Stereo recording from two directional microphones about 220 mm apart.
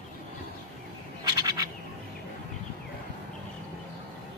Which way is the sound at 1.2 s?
15° right (ahead or behind).